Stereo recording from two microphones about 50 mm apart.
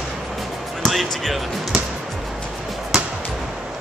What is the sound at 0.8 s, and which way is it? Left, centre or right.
Speech, centre.